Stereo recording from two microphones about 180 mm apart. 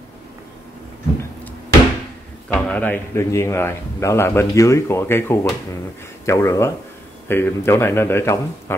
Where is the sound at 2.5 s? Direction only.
5° left (ahead or behind).